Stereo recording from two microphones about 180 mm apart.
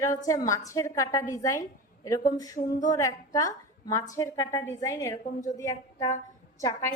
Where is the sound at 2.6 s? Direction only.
40° left (ahead or behind).